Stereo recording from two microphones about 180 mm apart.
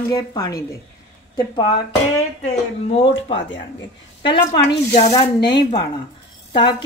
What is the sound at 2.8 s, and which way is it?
Speech, 35° left (ahead or behind).